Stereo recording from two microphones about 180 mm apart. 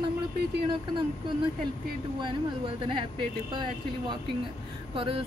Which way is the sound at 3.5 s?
25° right (ahead or behind).